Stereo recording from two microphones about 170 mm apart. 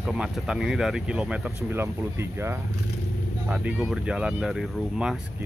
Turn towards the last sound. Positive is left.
turn(degrees=0)  # may be behind; listen again after turning